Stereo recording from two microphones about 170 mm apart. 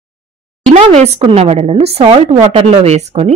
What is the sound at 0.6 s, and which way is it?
A woman's voice, 40° right (ahead or behind).